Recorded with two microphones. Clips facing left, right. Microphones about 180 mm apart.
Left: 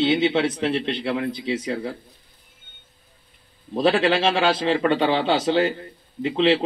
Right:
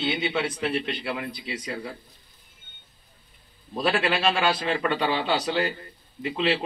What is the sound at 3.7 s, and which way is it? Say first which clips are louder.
A man's voice: left 6 dB; 25° left (ahead or behind).